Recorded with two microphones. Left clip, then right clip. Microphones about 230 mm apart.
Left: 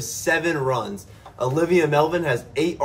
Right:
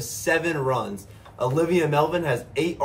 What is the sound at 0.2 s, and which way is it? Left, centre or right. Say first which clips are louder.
A man's voice: left 2 dB; centre.